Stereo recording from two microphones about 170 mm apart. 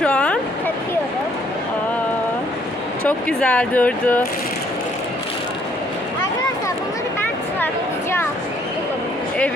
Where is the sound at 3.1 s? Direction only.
5° left (ahead or behind).